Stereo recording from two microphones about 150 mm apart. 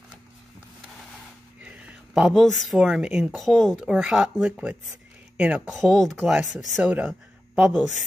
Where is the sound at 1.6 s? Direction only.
5° right (ahead or behind).